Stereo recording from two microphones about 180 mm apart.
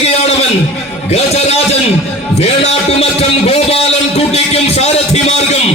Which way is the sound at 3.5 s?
35° left (ahead or behind).